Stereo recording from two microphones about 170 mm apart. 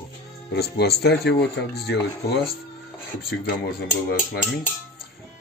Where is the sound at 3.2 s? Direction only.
65° left (ahead or behind).